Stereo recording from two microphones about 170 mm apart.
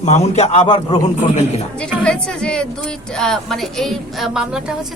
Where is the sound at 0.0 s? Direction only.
40° left (ahead or behind).